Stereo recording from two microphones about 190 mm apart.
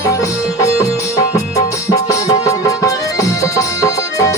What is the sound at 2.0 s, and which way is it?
Music, 15° left (ahead or behind).